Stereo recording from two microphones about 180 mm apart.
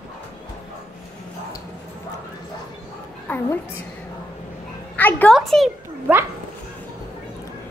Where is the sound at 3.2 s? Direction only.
10° left (ahead or behind).